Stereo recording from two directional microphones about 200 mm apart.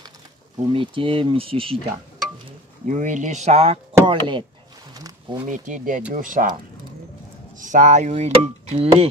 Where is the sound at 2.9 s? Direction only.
40° right (ahead or behind).